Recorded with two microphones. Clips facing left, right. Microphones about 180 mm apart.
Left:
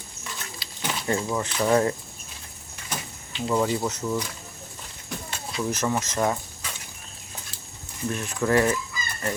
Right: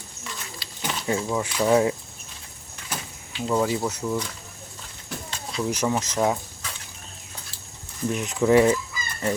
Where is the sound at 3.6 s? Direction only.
10° right (ahead or behind).